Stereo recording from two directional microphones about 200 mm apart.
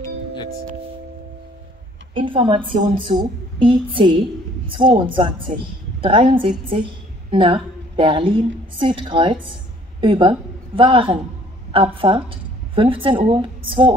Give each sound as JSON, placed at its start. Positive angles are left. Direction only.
{"t": 2.1, "sound": "a woman's voice", "side_deg": -25}